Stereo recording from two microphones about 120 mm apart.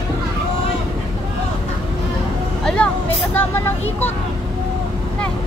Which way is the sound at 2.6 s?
10° left (ahead or behind).